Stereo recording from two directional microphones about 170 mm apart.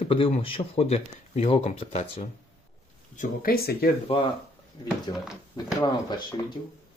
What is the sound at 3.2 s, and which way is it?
Speech, 60° left (ahead or behind).